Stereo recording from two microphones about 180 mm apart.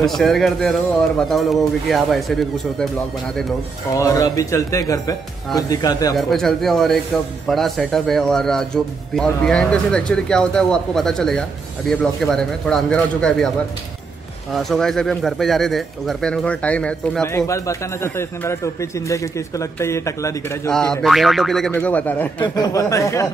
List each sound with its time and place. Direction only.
0.0 s speech: centre (ahead or behind)
3.9 s speech: 20° left (ahead or behind)
6.1 s speech: centre (ahead or behind)
14.5 s a man's voice: centre (ahead or behind); by 20.7 s 15° left (ahead or behind)
20.7 s a man's voice: 5° left (ahead or behind)
22.4 s a man's voice: 20° left (ahead or behind)